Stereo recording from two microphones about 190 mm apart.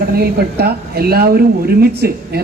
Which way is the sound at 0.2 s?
55° right (ahead or behind).